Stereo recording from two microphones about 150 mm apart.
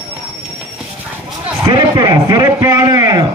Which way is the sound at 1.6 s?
30° right (ahead or behind).